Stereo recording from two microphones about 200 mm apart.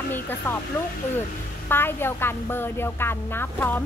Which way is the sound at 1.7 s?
10° left (ahead or behind).